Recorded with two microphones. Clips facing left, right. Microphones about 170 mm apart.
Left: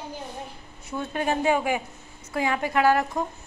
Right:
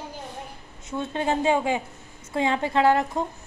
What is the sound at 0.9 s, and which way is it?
A woman's voice, 25° right (ahead or behind).